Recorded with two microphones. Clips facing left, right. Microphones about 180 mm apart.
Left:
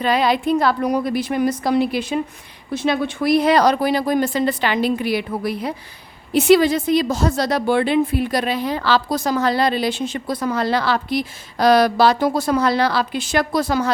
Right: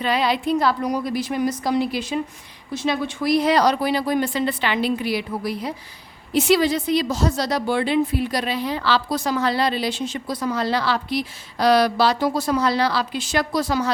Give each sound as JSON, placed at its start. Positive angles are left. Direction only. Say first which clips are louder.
{"t": 0.0, "sound": "a woman's voice", "louder": "left 3 dB", "side_deg": 45}